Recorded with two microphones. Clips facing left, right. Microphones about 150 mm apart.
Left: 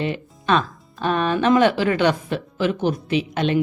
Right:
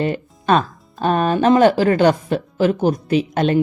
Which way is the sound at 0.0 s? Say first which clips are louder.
Right 4 dB; 45° right (ahead or behind).